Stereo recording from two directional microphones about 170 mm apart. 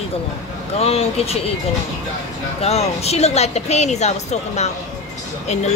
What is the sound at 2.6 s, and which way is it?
Speech, 40° left (ahead or behind).